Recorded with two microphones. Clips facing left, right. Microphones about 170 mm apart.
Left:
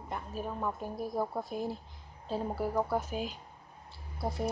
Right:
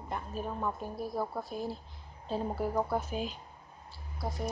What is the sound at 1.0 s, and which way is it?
A woman's voice, 20° left (ahead or behind).